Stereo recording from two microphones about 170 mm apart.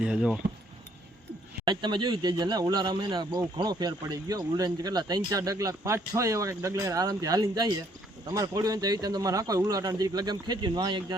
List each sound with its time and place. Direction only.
0.0 s speech: 5° right (ahead or behind)
1.6 s speech: 25° right (ahead or behind)